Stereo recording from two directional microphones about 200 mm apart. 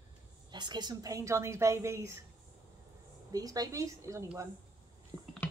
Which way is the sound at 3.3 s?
20° right (ahead or behind).